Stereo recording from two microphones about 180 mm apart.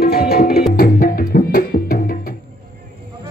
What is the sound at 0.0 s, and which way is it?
Tabla, 60° left (ahead or behind).